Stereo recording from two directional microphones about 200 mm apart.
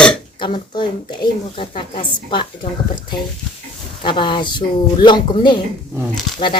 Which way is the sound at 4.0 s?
25° left (ahead or behind).